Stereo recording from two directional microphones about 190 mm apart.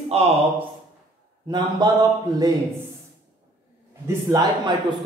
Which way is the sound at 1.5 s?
20° right (ahead or behind).